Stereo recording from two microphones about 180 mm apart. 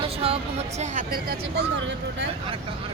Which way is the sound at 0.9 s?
55° right (ahead or behind).